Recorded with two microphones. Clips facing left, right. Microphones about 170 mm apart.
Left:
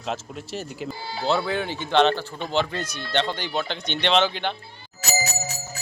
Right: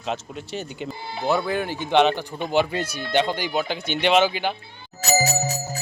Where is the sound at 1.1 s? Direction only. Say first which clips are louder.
Right 1 dB; 20° right (ahead or behind).